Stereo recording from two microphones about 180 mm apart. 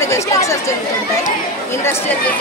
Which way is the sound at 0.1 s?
15° left (ahead or behind).